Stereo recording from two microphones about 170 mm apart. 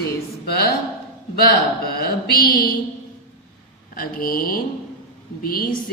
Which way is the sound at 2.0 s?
65° left (ahead or behind).